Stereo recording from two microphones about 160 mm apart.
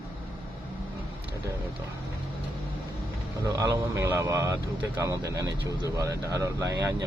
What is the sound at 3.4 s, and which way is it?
Speech, 20° right (ahead or behind).